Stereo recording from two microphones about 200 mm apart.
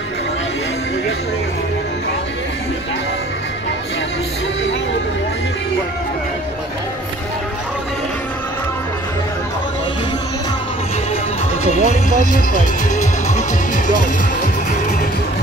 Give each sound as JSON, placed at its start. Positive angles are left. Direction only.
{"t": 11.6, "sound": "music", "side_deg": 35}